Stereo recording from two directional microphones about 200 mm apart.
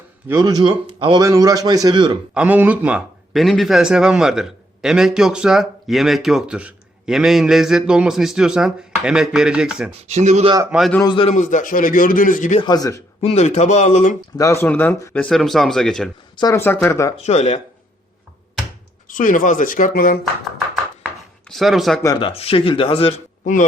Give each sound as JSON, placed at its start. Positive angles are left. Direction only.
{"t": 0.3, "sound": "a man's voice", "side_deg": -15}
{"t": 2.3, "sound": "a man's voice", "side_deg": -5}
{"t": 10.1, "sound": "speech", "side_deg": -35}
{"t": 10.7, "sound": "a man's voice", "side_deg": 0}
{"t": 11.0, "sound": "speech", "side_deg": 25}
{"t": 12.6, "sound": "speech", "side_deg": 20}
{"t": 13.2, "sound": "speech", "side_deg": 35}
{"t": 14.3, "sound": "a man's voice", "side_deg": 15}
{"t": 16.4, "sound": "speech", "side_deg": 15}
{"t": 17.2, "sound": "speech", "side_deg": 35}
{"t": 19.1, "sound": "speech", "side_deg": 40}
{"t": 21.5, "sound": "a man's voice", "side_deg": 0}
{"t": 22.0, "sound": "speech", "side_deg": 25}
{"t": 23.4, "sound": "speech", "side_deg": 40}